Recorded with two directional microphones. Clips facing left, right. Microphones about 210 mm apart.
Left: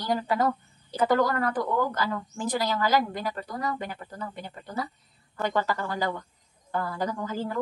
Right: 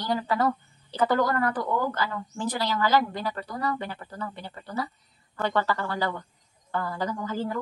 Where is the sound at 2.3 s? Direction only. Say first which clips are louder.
Even; 10° left (ahead or behind).